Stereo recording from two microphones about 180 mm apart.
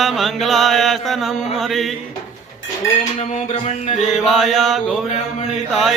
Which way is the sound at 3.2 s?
40° left (ahead or behind).